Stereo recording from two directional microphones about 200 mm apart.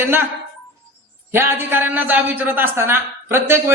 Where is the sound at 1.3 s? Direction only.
10° right (ahead or behind).